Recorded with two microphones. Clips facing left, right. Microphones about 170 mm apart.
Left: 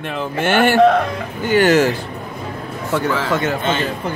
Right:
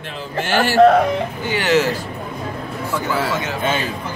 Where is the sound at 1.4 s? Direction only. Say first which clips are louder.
Left 6 dB; 50° left (ahead or behind).